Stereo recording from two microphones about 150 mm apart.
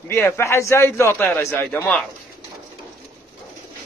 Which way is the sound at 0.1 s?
20° left (ahead or behind).